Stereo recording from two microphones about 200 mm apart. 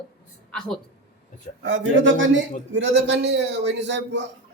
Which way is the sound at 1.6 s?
65° right (ahead or behind).